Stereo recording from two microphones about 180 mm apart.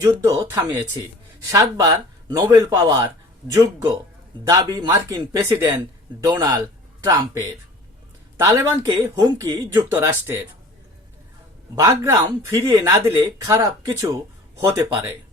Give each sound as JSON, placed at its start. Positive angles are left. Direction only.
{"t": 0.0, "sound": "a man's voice", "side_deg": -20}
{"t": 11.7, "sound": "speech", "side_deg": -15}